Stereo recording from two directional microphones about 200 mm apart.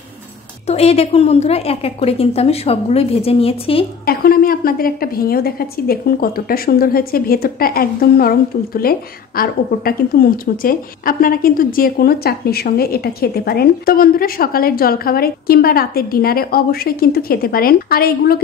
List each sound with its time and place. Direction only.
0.7 s a woman's voice: 30° left (ahead or behind)
4.0 s a woman's voice: 50° left (ahead or behind)